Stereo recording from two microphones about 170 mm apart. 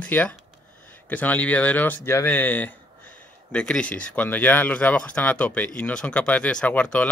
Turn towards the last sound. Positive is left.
turn(degrees=10)  # may be behind; listen again after turning